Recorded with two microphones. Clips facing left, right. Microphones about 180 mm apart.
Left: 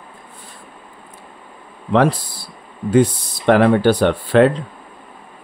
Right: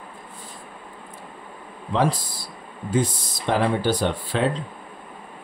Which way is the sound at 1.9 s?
65° left (ahead or behind).